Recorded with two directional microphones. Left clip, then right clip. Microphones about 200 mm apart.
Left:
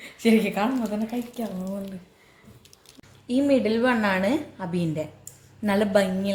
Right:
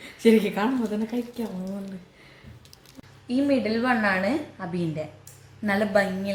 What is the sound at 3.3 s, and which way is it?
A woman's voice, 35° left (ahead or behind).